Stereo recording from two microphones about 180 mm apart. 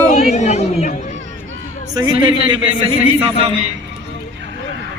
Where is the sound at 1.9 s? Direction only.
20° right (ahead or behind).